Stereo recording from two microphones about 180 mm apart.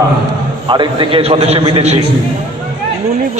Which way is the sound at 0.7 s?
25° right (ahead or behind).